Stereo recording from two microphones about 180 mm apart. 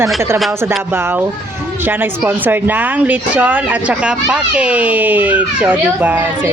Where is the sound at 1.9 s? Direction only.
10° right (ahead or behind).